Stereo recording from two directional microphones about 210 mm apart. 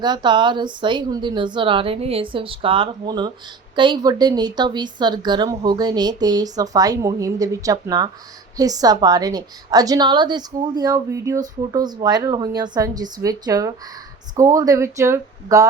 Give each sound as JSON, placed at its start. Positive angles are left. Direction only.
{"t": 0.0, "sound": "a woman's voice", "side_deg": -20}